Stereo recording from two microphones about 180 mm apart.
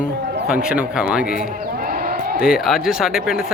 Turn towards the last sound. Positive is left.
turn(degrees=-5)  # may be behind; listen again after turning